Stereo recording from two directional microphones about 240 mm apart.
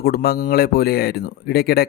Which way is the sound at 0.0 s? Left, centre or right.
Left.